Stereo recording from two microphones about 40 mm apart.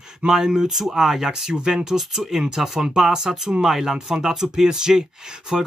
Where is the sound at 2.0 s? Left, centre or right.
Centre.